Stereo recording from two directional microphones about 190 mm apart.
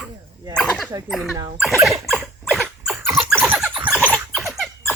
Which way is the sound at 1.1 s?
Centre (ahead or behind).